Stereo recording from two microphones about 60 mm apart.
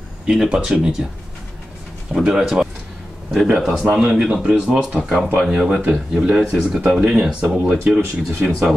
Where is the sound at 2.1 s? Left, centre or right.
Centre.